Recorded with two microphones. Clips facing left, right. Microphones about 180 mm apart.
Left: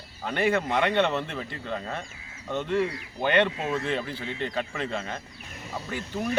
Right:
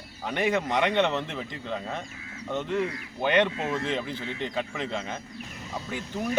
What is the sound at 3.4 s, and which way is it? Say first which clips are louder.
Speech: even; 15° left (ahead or behind).